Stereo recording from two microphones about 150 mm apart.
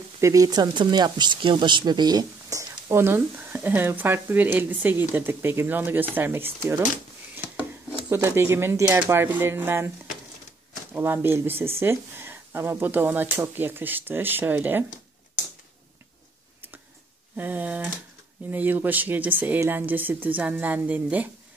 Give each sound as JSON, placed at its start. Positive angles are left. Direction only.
{"t": 0.2, "sound": "speech", "side_deg": -20}
{"t": 10.9, "sound": "speech", "side_deg": -15}
{"t": 17.4, "sound": "speech", "side_deg": -10}